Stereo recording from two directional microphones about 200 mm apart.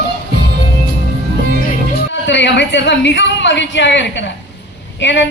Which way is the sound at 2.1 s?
65° left (ahead or behind).